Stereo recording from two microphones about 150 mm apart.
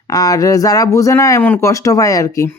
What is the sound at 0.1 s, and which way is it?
Speech, 25° left (ahead or behind).